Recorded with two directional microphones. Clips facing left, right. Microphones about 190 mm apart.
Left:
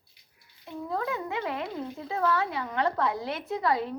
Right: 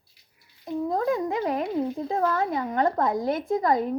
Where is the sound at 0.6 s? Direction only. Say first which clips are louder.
Right 7 dB; 40° right (ahead or behind).